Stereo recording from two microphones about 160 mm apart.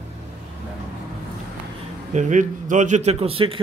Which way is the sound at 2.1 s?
50° right (ahead or behind).